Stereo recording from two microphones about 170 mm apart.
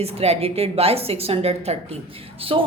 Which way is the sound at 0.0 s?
40° right (ahead or behind).